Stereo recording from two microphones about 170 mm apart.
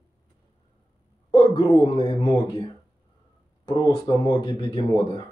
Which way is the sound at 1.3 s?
30° left (ahead or behind).